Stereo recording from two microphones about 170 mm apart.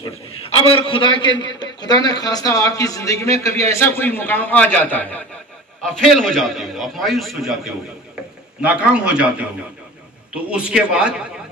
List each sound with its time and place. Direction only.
0.0 s a man's voice: 30° left (ahead or behind); by 11.2 s 5° right (ahead or behind)